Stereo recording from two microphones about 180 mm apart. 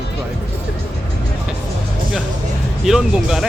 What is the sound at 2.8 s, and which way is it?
Speech, centre (ahead or behind).